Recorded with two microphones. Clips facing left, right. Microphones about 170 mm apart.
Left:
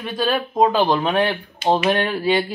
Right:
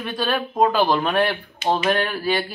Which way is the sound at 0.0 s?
10° left (ahead or behind).